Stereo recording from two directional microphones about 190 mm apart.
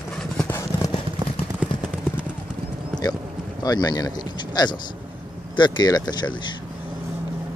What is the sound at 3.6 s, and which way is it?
Speech, 20° left (ahead or behind).